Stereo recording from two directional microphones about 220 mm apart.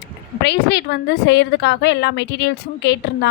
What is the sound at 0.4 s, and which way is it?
A woman's voice, 50° left (ahead or behind).